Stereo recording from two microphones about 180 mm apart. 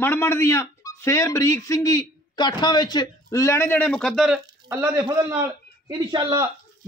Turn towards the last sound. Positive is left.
turn(degrees=-20)  # may be behind; listen again after turning